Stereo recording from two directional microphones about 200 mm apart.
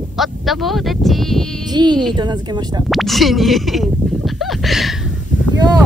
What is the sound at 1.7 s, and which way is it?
Speech, 20° right (ahead or behind).